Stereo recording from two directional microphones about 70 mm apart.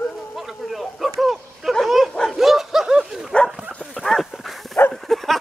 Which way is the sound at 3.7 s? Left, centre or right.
Centre.